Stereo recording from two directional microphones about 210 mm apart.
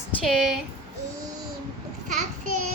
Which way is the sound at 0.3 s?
Centre (ahead or behind).